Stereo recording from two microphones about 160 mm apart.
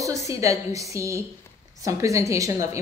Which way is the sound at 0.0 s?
20° right (ahead or behind).